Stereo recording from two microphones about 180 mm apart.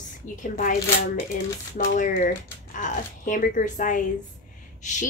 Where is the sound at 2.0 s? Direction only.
45° left (ahead or behind).